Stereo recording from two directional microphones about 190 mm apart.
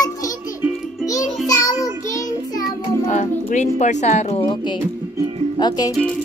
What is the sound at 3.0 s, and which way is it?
Speech, 40° left (ahead or behind).